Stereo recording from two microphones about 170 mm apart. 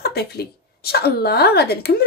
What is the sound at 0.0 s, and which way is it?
A woman's voice, 70° left (ahead or behind).